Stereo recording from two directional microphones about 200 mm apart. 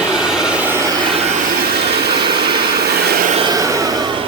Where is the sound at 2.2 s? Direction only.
25° right (ahead or behind).